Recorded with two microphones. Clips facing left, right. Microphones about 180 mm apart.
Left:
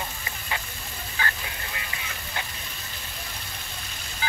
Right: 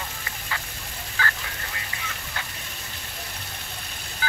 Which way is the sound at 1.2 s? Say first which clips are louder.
Right 1 dB; 20° left (ahead or behind).